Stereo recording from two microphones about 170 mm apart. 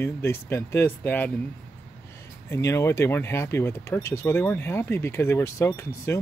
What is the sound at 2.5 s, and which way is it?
Speech, 15° left (ahead or behind).